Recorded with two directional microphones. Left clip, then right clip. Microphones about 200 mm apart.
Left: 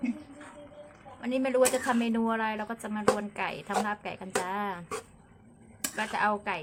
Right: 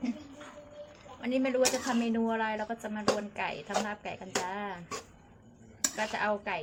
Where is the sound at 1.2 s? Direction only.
15° left (ahead or behind).